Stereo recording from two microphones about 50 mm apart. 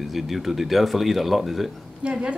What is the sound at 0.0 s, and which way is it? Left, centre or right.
Speech, centre.